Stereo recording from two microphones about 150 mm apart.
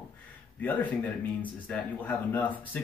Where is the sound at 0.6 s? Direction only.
10° left (ahead or behind).